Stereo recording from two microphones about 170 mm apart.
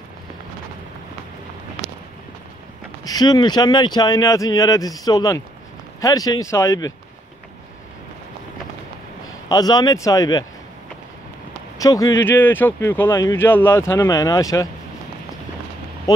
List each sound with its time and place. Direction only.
3.1 s speech: 25° left (ahead or behind)
9.5 s speech: 20° left (ahead or behind)
11.8 s speech: 20° left (ahead or behind)